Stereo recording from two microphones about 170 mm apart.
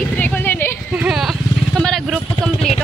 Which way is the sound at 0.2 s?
10° left (ahead or behind).